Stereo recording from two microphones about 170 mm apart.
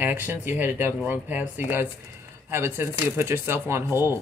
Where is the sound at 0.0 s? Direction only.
10° right (ahead or behind).